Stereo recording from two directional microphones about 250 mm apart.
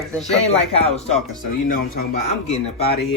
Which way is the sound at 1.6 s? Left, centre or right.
Left.